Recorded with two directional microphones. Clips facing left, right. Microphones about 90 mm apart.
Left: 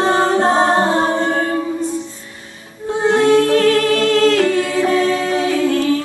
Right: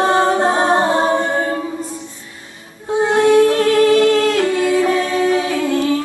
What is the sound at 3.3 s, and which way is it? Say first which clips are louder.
Music: right 1 dB; 20° right (ahead or behind).